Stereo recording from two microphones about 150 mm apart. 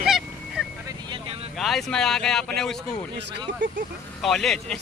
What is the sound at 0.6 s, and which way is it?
Vehicle, 5° right (ahead or behind).